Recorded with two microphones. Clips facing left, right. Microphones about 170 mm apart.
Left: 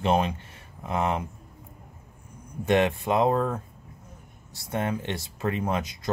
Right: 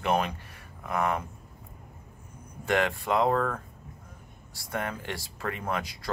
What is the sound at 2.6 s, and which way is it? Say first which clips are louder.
Speech: left 4 dB; 20° left (ahead or behind).